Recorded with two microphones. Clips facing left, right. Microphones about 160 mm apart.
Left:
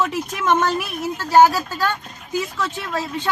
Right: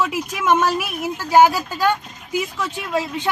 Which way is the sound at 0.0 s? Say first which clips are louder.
Even; 10° right (ahead or behind).